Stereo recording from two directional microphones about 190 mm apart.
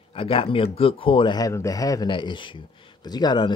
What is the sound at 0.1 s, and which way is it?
Speech, 30° left (ahead or behind).